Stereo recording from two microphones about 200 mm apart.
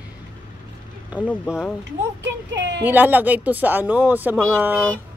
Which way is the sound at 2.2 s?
65° right (ahead or behind).